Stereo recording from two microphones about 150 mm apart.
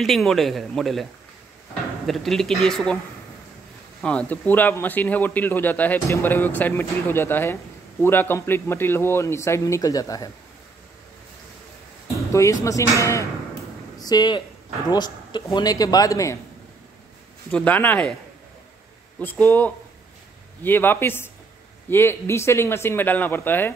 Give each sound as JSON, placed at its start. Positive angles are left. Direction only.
{"t": 0.0, "sound": "speech", "side_deg": 0}
{"t": 2.0, "sound": "speech", "side_deg": 0}
{"t": 4.0, "sound": "a man's voice", "side_deg": 10}
{"t": 12.3, "sound": "speech", "side_deg": 20}
{"t": 17.5, "sound": "a man's voice", "side_deg": 10}
{"t": 19.1, "sound": "a man's voice", "side_deg": 10}